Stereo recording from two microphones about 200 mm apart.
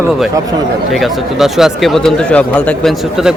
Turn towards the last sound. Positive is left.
turn(degrees=0)  # may be behind; listen again after turning